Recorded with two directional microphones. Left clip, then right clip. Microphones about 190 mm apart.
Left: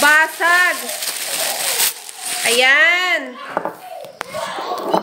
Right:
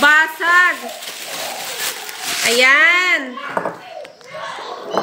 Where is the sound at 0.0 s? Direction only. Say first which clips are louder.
Even; 15° right (ahead or behind).